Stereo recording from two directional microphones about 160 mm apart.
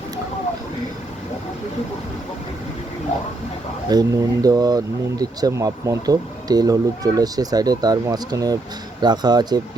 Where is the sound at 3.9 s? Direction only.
20° right (ahead or behind).